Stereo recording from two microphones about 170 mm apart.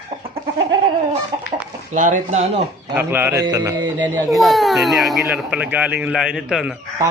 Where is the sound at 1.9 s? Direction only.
50° right (ahead or behind).